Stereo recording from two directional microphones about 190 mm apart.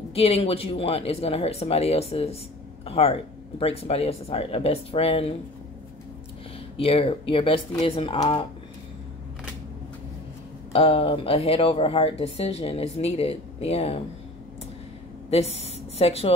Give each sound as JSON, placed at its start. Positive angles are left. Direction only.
{"t": 0.1, "sound": "speech", "side_deg": 30}
{"t": 6.8, "sound": "speech", "side_deg": 30}
{"t": 10.7, "sound": "speech", "side_deg": 30}
{"t": 15.2, "sound": "a woman's voice", "side_deg": 35}